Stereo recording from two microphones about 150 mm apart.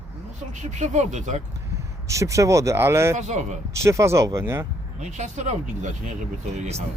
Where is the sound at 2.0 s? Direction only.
20° right (ahead or behind).